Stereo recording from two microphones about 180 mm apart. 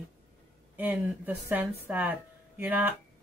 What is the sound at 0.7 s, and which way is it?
Speech, 10° right (ahead or behind).